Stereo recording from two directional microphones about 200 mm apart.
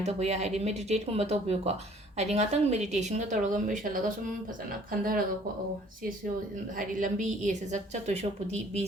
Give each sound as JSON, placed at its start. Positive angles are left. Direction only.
{"t": 0.0, "sound": "a woman's voice", "side_deg": -35}
{"t": 6.7, "sound": "a woman's voice", "side_deg": -40}